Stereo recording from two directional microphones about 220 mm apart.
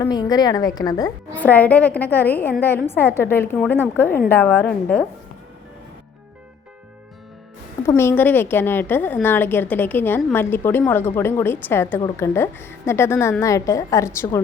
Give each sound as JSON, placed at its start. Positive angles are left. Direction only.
{"t": 0.0, "sound": "a woman's voice", "side_deg": 20}
{"t": 7.9, "sound": "a woman's voice", "side_deg": 10}